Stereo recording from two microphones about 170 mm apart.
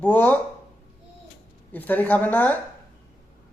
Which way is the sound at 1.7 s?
10° left (ahead or behind).